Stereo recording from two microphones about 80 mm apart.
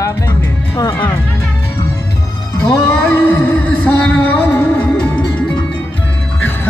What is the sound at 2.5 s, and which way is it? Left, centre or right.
Music, centre.